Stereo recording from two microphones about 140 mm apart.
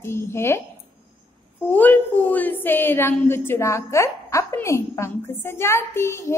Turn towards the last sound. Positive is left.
turn(degrees=20)  # may be behind; listen again after turning